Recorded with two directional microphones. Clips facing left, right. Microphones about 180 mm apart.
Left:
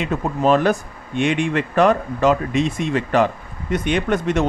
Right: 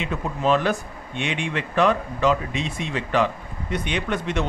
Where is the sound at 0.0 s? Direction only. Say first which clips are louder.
Left 5 dB; 45° left (ahead or behind).